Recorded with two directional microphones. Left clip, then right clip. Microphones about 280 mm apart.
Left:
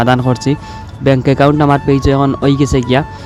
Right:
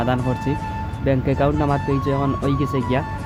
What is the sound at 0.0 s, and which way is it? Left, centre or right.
Speech, left.